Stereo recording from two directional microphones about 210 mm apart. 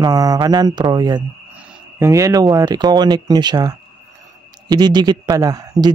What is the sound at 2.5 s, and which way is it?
Speech, 20° right (ahead or behind).